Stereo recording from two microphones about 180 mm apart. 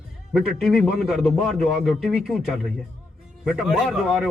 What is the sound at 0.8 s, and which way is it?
A man's voice, centre (ahead or behind).